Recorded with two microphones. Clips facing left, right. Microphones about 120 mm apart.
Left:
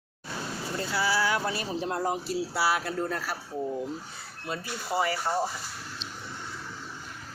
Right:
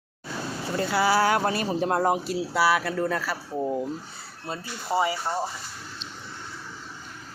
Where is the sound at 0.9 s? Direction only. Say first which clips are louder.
Right 6 dB; 55° right (ahead or behind).